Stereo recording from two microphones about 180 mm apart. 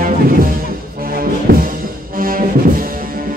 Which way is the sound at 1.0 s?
55° right (ahead or behind).